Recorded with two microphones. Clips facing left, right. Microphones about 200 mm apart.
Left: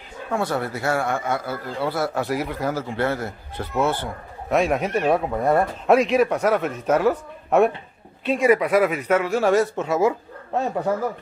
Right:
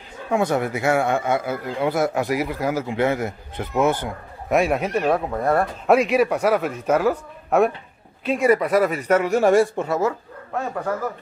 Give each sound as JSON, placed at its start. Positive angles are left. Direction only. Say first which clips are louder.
{"t": 0.3, "sound": "speech", "louder": "right 4 dB", "side_deg": -15}
{"t": 9.1, "sound": "speech", "louder": "right 3 dB", "side_deg": -15}
{"t": 9.8, "sound": "speech", "louder": "left 2 dB", "side_deg": 10}
{"t": 10.5, "sound": "speech", "louder": "left 3 dB", "side_deg": 25}